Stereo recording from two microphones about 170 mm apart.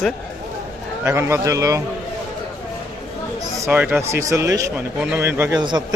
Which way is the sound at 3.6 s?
10° right (ahead or behind).